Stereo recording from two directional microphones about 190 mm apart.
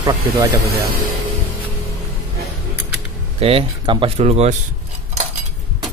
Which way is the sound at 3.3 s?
30° right (ahead or behind).